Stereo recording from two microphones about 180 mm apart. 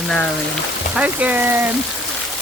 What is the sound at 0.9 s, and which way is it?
Speech, 10° right (ahead or behind).